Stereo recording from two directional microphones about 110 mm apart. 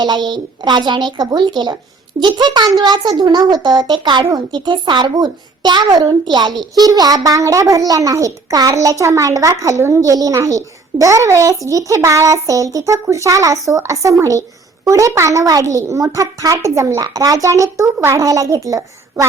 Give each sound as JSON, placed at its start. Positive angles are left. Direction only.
{"t": 0.0, "sound": "a child's voice", "side_deg": -40}